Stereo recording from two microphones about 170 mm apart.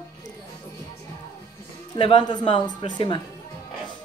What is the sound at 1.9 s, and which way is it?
Speech, 30° left (ahead or behind).